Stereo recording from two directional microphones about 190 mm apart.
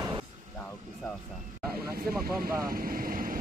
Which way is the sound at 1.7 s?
50° right (ahead or behind).